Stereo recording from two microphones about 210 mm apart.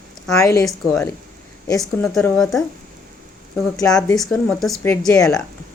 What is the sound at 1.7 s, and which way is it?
Speech, 15° left (ahead or behind).